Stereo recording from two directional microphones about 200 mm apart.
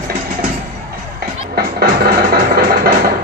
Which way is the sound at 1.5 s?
50° right (ahead or behind).